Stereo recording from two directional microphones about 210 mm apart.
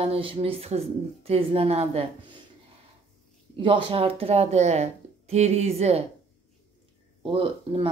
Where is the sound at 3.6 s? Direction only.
25° right (ahead or behind).